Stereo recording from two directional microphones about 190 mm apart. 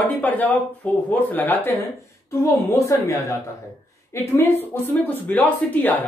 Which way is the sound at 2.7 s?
15° left (ahead or behind).